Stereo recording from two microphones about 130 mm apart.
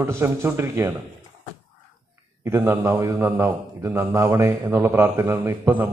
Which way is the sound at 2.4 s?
20° right (ahead or behind).